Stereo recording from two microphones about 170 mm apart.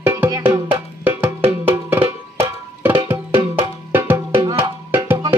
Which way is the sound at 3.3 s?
35° right (ahead or behind).